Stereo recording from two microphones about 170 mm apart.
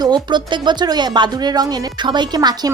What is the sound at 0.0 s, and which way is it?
Speech, 25° right (ahead or behind).